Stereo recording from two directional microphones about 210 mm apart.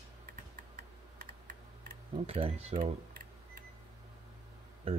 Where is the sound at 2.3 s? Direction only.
25° right (ahead or behind).